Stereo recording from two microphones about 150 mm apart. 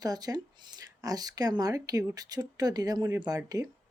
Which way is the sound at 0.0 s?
25° right (ahead or behind).